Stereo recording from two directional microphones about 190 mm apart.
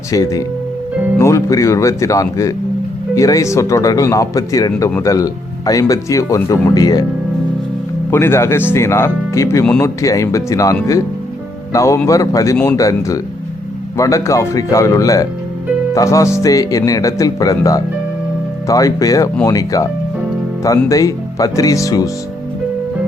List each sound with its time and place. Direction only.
0.1 s speech: 20° left (ahead or behind)
8.1 s speech: 15° left (ahead or behind)